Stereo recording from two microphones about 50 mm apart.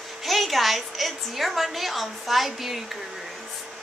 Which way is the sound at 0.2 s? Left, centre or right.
Centre.